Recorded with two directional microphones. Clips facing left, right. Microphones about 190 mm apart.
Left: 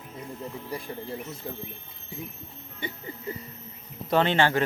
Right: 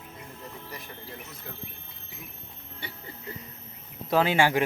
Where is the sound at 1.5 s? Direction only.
25° left (ahead or behind).